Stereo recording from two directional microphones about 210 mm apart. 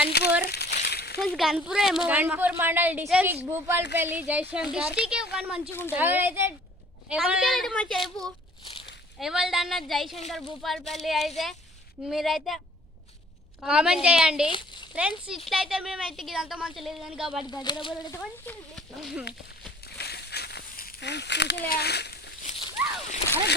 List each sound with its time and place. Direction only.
0.1 s speech: 50° left (ahead or behind)
0.4 s a sound: 50° left (ahead or behind)
1.2 s a woman's voice: centre (ahead or behind)
13.6 s a woman's voice: 5° right (ahead or behind)
14.5 s a sound: 20° left (ahead or behind)
14.9 s a woman's voice: 5° right (ahead or behind)
17.5 s speech: 20° left (ahead or behind)
18.2 s a woman's voice: centre (ahead or behind)
20.0 s a sound: 50° left (ahead or behind)
21.7 s speech: 50° left (ahead or behind)